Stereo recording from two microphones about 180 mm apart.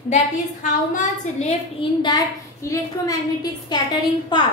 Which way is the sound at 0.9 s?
40° left (ahead or behind).